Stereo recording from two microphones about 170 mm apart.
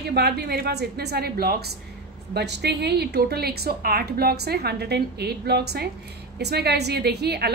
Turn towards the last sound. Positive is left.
turn(degrees=-75)  # may be behind; listen again after turning